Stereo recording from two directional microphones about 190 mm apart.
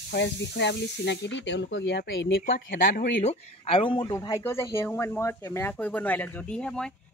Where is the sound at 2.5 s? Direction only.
50° left (ahead or behind).